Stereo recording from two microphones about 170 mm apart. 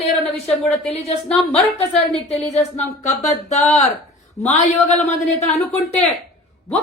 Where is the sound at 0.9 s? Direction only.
40° left (ahead or behind).